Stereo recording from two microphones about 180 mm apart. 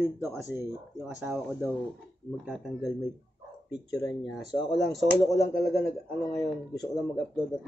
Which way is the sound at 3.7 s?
20° left (ahead or behind).